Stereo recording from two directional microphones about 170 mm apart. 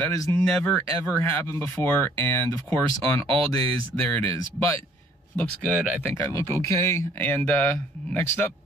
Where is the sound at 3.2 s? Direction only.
35° right (ahead or behind).